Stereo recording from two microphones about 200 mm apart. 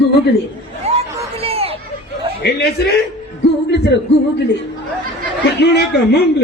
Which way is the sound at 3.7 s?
60° left (ahead or behind).